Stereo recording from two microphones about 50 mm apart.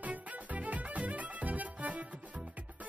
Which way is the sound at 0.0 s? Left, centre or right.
Right.